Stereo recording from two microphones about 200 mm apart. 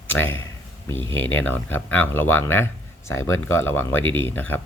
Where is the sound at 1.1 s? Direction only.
70° left (ahead or behind).